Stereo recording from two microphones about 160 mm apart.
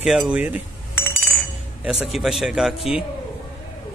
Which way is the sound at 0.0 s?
5° right (ahead or behind).